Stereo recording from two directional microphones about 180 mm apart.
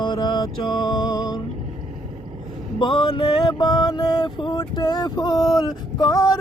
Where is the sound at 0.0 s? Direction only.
25° left (ahead or behind).